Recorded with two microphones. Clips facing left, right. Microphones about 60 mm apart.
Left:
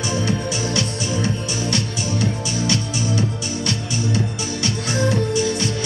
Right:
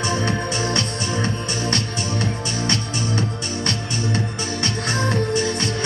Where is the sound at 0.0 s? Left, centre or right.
Right.